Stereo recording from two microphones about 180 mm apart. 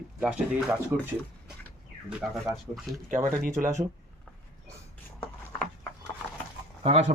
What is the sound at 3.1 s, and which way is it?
Speech, 45° right (ahead or behind).